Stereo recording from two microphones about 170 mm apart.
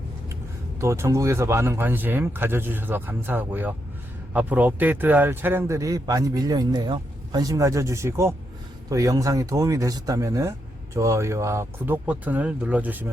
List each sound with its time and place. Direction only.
0.8 s speech: 15° right (ahead or behind)